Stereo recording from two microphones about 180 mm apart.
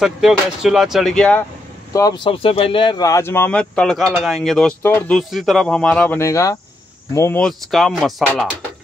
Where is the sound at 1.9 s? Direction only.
20° left (ahead or behind).